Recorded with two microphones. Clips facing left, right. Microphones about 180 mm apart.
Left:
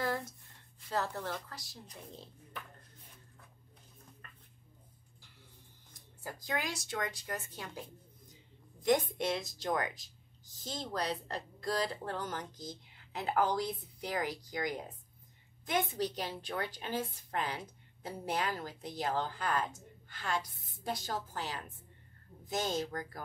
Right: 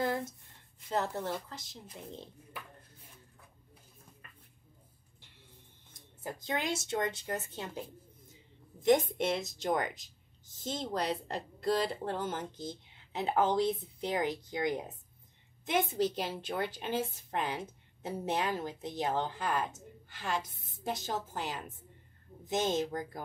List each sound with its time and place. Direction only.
0.0 s a sound: 20° right (ahead or behind)
0.8 s a woman's voice: 20° right (ahead or behind)
6.2 s a woman's voice: 25° right (ahead or behind)
8.9 s a woman's voice: 25° right (ahead or behind)